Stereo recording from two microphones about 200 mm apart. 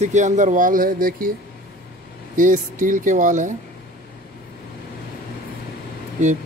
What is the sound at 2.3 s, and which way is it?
Speech, 40° right (ahead or behind).